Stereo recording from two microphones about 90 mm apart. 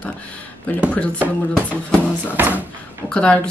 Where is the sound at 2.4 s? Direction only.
20° right (ahead or behind).